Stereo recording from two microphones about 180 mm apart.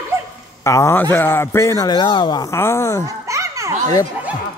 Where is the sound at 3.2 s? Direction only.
15° right (ahead or behind).